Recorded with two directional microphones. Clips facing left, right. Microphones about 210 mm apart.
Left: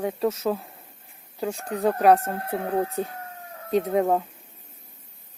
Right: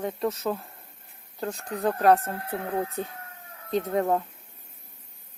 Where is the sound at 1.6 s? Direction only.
30° left (ahead or behind).